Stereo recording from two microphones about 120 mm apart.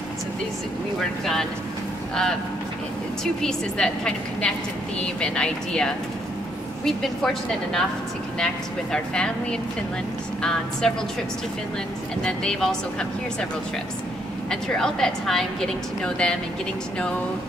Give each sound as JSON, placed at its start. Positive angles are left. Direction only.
{"t": 1.2, "sound": "a woman's voice", "side_deg": 5}
{"t": 3.4, "sound": "a woman's voice", "side_deg": 5}
{"t": 8.9, "sound": "a woman's voice", "side_deg": 5}
{"t": 12.2, "sound": "a woman's voice", "side_deg": 5}
{"t": 14.5, "sound": "a woman's voice", "side_deg": 5}